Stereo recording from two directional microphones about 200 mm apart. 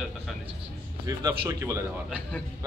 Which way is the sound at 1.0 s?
20° right (ahead or behind).